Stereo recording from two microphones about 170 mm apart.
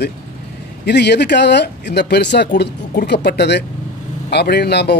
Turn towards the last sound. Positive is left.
turn(degrees=75)  # may be behind; listen again after turning